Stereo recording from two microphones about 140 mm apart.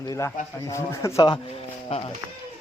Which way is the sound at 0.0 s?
25° left (ahead or behind).